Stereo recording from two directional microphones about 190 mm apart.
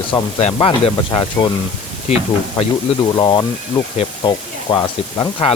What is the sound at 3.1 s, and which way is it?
Speech, 20° left (ahead or behind).